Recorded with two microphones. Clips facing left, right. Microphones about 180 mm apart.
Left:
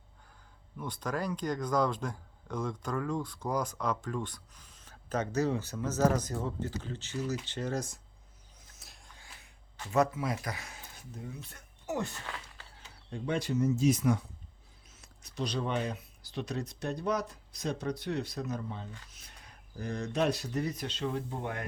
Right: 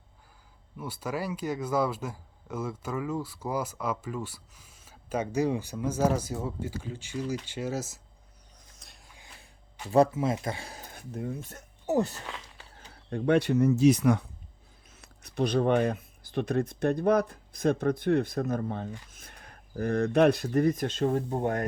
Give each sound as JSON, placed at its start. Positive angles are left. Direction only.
{"t": 0.8, "sound": "speech", "side_deg": -5}
{"t": 8.8, "sound": "a sound", "side_deg": 5}
{"t": 9.9, "sound": "speech", "side_deg": -30}
{"t": 10.8, "sound": "speech", "side_deg": -60}
{"t": 13.1, "sound": "speech", "side_deg": -60}